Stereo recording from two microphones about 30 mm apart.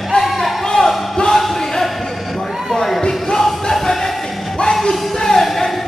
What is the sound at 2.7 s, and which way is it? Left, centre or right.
Basketball bounce, centre.